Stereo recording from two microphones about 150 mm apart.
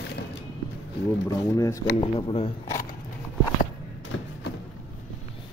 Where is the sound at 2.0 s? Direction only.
40° left (ahead or behind).